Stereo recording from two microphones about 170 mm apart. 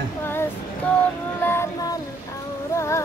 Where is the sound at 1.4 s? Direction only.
15° left (ahead or behind).